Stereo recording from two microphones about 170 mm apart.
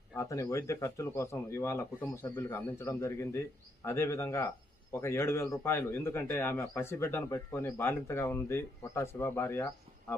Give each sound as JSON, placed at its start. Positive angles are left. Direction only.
{"t": 0.2, "sound": "speech", "side_deg": 15}